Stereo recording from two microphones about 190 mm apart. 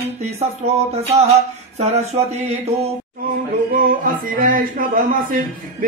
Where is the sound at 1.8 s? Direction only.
35° right (ahead or behind).